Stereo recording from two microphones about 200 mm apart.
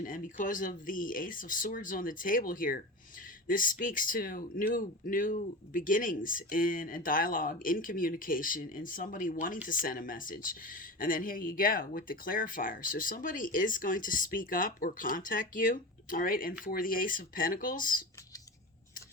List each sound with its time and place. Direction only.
0.0 s speech: 40° left (ahead or behind)